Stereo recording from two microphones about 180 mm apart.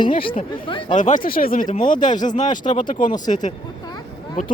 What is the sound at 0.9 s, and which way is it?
Speech, 45° left (ahead or behind).